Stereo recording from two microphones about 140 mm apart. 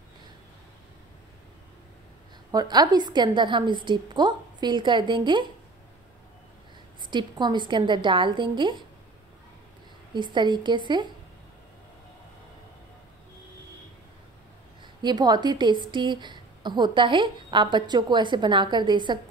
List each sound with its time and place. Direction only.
2.5 s speech: 30° right (ahead or behind)
7.0 s speech: 35° right (ahead or behind)
10.1 s speech: 35° right (ahead or behind)
15.0 s speech: 30° right (ahead or behind)